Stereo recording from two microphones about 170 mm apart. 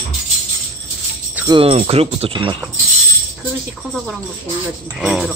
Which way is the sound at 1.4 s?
30° right (ahead or behind).